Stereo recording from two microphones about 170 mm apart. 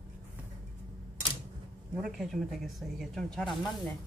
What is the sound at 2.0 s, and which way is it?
Speech, centre (ahead or behind).